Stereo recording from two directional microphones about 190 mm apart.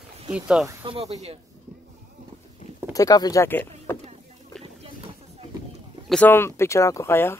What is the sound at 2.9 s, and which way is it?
Speech, 20° left (ahead or behind).